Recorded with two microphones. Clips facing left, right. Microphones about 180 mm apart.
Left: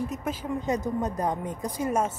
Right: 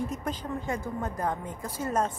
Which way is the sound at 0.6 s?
20° left (ahead or behind).